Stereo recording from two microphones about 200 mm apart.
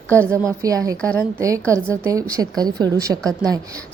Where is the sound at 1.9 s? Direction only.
15° right (ahead or behind).